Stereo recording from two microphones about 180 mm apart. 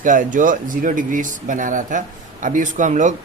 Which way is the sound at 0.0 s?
45° right (ahead or behind).